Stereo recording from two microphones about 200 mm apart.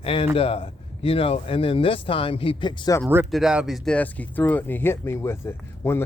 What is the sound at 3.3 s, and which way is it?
Speech, 5° right (ahead or behind).